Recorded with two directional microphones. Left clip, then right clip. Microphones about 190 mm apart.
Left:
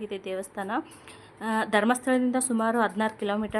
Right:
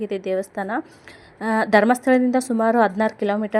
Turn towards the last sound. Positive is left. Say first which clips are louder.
# right 7 dB
turn(degrees=-20)  # may be behind; listen again after turning